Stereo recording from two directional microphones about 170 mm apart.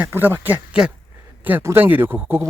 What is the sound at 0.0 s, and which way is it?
A man's voice, 10° right (ahead or behind).